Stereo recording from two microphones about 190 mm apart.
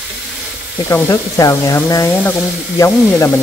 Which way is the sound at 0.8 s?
15° left (ahead or behind).